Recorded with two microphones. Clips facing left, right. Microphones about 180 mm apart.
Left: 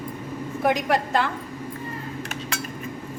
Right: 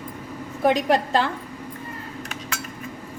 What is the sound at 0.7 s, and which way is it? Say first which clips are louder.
Speech: right 3 dB; 30° right (ahead or behind).